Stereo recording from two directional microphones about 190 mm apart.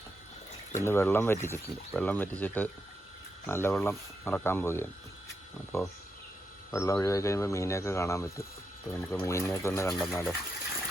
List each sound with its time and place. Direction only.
0.7 s speech: 15° left (ahead or behind)